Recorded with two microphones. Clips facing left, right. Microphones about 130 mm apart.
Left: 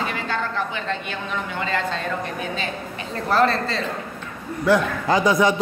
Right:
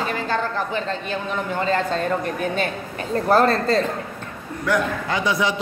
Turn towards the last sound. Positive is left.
turn(degrees=45)  # may be behind; listen again after turning